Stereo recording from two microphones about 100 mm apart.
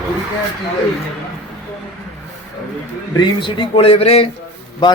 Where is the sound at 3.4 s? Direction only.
55° left (ahead or behind); by 4.3 s 85° left.